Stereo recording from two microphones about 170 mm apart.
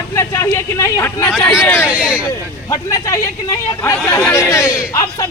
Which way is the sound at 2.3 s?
20° left (ahead or behind).